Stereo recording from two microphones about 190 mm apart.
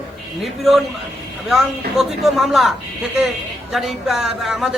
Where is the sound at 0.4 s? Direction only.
Centre (ahead or behind).